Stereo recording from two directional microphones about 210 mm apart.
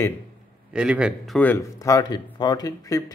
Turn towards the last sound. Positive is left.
turn(degrees=15)  # may be behind; listen again after turning